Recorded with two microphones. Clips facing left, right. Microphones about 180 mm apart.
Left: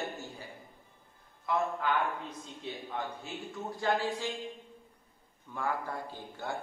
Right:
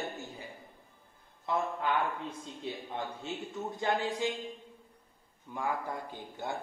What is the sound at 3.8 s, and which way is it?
Speech, 20° right (ahead or behind).